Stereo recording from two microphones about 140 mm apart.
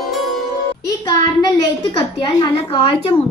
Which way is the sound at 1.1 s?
30° left (ahead or behind).